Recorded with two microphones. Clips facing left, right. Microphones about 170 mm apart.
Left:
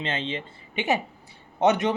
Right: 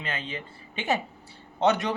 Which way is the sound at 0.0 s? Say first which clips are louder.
Left 5 dB; 25° left (ahead or behind).